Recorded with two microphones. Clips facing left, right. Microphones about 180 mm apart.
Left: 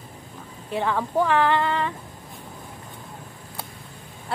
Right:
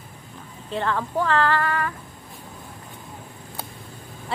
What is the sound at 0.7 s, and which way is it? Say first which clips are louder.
Speech: left 1 dB; 10° left (ahead or behind).